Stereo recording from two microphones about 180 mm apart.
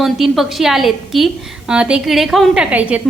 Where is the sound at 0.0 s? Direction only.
Centre (ahead or behind).